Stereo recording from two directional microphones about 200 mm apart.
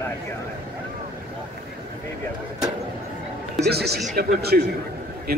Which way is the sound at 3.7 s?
50° right (ahead or behind).